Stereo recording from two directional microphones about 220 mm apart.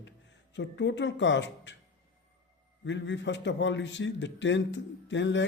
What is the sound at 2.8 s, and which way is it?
A man's voice, 55° left (ahead or behind).